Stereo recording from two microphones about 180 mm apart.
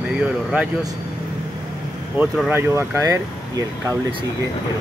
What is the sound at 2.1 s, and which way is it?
Speech, 5° right (ahead or behind).